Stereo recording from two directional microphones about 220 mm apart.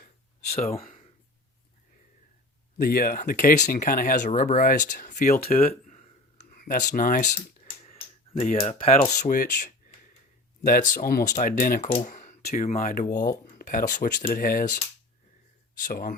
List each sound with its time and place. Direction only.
0.5 s speech: 25° left (ahead or behind)
2.7 s speech: 40° left (ahead or behind)
6.5 s a sound: 35° left (ahead or behind)
9.2 s speech: 35° left (ahead or behind)
15.8 s speech: 40° left (ahead or behind)